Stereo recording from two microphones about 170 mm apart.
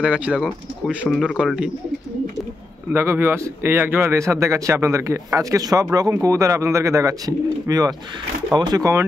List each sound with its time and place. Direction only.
0.0 s speech: 5° right (ahead or behind)
0.3 s speech: 5° left (ahead or behind)
2.9 s speech: 15° right (ahead or behind)